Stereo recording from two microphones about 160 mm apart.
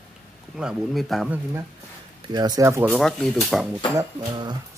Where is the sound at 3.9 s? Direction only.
25° right (ahead or behind).